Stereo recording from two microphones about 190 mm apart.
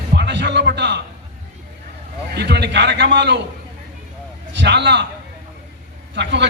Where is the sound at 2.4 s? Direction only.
60° right (ahead or behind).